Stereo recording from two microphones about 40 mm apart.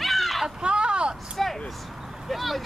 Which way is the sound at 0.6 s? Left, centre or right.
Right.